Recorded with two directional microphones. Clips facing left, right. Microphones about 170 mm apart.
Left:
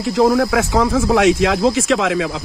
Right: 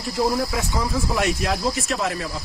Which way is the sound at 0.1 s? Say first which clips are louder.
Left 8 dB; 85° left.